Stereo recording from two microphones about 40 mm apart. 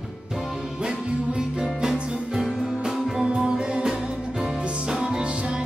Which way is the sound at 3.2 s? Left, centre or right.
Centre.